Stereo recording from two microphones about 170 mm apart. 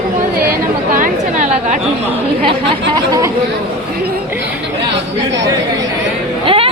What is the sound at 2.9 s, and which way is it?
Speech, 20° right (ahead or behind).